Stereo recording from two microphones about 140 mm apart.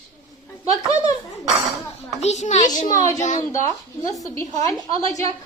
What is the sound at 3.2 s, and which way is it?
Speech, 60° left (ahead or behind).